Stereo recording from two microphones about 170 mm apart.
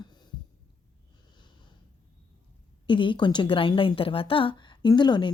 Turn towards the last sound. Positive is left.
turn(degrees=25)  # may be behind; listen again after turning